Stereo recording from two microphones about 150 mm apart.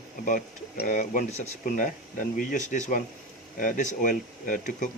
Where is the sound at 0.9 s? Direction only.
55° left (ahead or behind).